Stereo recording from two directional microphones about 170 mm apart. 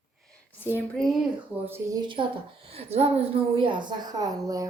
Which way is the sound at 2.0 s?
30° right (ahead or behind).